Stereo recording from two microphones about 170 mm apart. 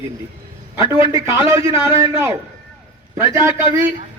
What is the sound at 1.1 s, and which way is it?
A man's voice, 15° right (ahead or behind).